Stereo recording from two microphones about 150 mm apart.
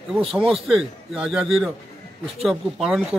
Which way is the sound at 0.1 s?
Centre (ahead or behind).